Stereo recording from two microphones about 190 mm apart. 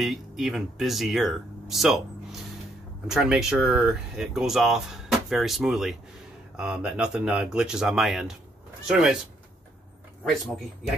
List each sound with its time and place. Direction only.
0.0 s speech: centre (ahead or behind)
3.1 s speech: 5° right (ahead or behind)
10.2 s speech: centre (ahead or behind)